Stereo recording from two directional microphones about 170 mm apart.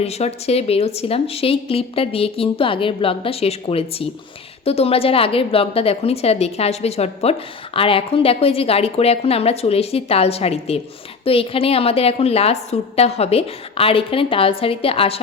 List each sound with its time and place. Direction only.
0.0 s a woman's voice: 40° left (ahead or behind)